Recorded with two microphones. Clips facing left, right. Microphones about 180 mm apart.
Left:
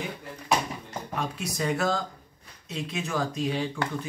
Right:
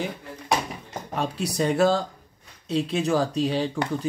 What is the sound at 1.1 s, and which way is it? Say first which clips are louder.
Speech: right 6 dB; 30° right (ahead or behind).